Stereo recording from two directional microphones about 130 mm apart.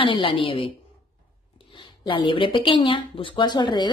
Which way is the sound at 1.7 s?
40° left (ahead or behind).